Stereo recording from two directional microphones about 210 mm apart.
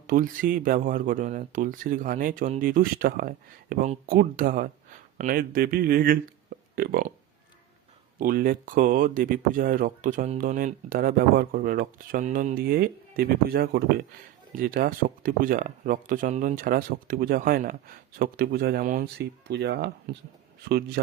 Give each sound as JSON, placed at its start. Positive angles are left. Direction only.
{"t": 0.1, "sound": "speech", "side_deg": -40}
{"t": 8.2, "sound": "speech", "side_deg": -40}